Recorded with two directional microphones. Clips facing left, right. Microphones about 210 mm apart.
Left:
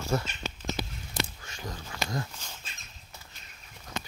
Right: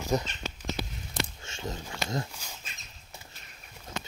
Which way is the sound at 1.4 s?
25° right (ahead or behind).